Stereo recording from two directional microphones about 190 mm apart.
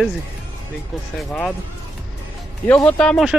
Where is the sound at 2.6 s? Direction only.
10° left (ahead or behind).